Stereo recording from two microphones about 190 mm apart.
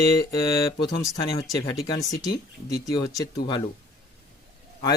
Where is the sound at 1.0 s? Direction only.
15° left (ahead or behind).